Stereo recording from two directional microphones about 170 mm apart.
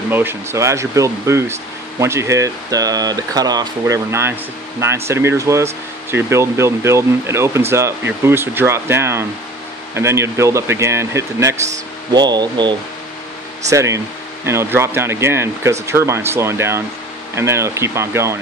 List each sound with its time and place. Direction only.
0.1 s speech: 15° right (ahead or behind)